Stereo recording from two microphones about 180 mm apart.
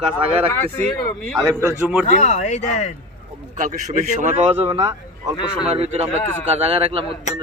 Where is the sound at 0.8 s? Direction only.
10° left (ahead or behind).